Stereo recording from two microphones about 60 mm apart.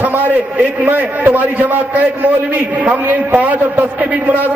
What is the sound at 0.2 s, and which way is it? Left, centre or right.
A man's voice, right.